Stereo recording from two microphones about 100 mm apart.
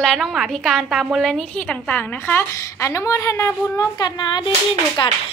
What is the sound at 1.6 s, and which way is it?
A woman's voice, 15° left (ahead or behind).